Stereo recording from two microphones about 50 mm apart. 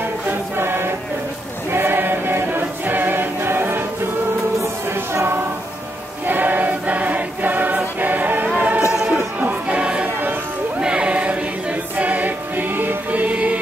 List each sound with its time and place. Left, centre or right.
0.3 s music: right
1.7 s choir: right
6.2 s choir: right
8.5 s music: right
8.9 s music: centre
9.7 s a sound: right
10.8 s music: right